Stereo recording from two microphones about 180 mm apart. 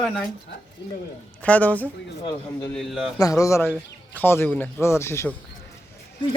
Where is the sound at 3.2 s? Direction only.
15° left (ahead or behind).